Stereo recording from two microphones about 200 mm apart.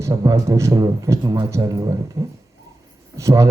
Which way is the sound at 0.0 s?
15° right (ahead or behind).